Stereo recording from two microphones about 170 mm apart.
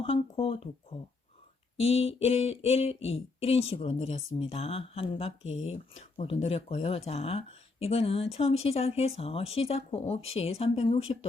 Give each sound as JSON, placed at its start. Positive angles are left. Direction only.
{"t": 0.0, "sound": "speech", "side_deg": 30}